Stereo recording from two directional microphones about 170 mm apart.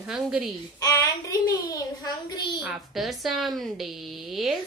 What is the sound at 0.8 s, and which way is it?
A child's voice, 20° left (ahead or behind).